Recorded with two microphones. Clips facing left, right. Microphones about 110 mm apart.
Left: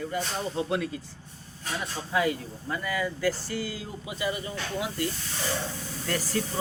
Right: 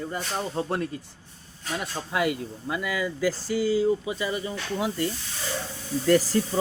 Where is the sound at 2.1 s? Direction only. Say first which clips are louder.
Even; 65° right (ahead or behind).